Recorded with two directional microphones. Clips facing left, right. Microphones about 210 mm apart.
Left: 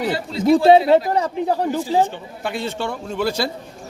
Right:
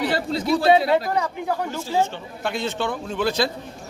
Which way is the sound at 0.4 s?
45° left (ahead or behind).